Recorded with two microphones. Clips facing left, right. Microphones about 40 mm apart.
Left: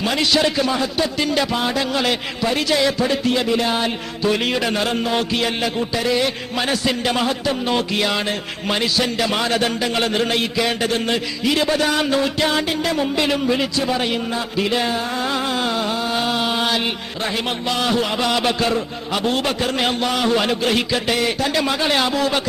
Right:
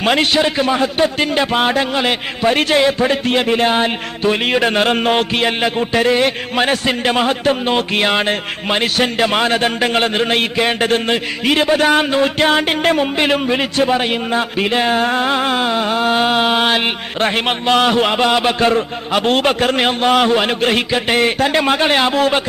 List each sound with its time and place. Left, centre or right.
0.0 s a man's voice: right
0.3 s a man's voice: right